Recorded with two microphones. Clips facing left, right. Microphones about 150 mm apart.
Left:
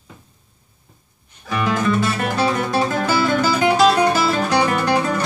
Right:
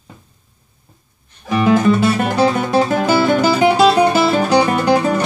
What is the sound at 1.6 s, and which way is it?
Music, 30° right (ahead or behind).